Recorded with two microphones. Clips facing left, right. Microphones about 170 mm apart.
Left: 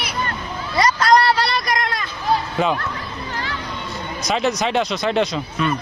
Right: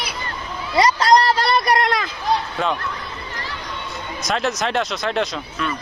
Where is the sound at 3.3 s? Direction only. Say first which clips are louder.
Left 7 dB; 80° left.